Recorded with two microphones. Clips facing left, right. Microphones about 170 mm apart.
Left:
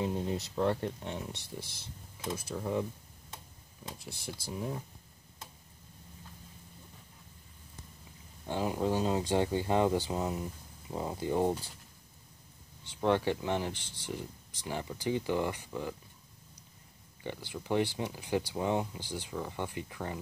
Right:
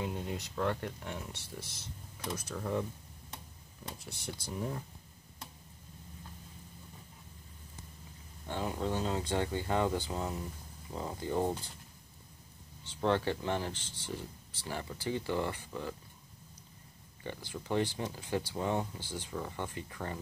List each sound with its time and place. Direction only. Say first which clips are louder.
0.0 s speech: left 5 dB; 30° left (ahead or behind)
2.5 s speech: left 2 dB; 15° left (ahead or behind)
4.3 s speech: left 1 dB; 5° left (ahead or behind)
8.5 s speech: left 4 dB; 15° left (ahead or behind)
13.0 s speech: left 2 dB; 15° left (ahead or behind)
17.2 s speech: left 2 dB; 15° left (ahead or behind)